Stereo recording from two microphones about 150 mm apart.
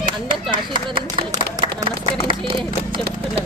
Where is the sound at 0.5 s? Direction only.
35° right (ahead or behind).